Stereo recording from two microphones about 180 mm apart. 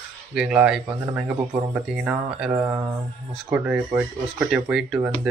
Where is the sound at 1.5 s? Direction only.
15° right (ahead or behind).